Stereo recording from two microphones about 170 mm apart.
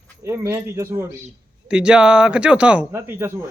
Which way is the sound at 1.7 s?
5° right (ahead or behind).